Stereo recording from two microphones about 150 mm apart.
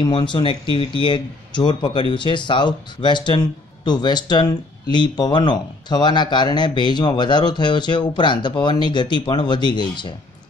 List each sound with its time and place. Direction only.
0.0 s a man's voice: 30° left (ahead or behind)